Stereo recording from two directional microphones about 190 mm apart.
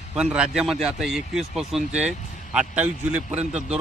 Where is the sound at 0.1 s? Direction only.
5° right (ahead or behind).